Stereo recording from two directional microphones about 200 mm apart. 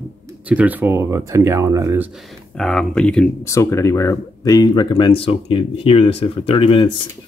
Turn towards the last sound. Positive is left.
turn(degrees=25)  # may be behind; listen again after turning